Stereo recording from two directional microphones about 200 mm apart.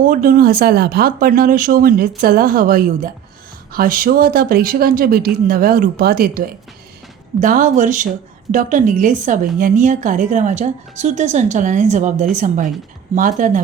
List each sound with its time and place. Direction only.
0.0 s a woman's voice: 45° right (ahead or behind)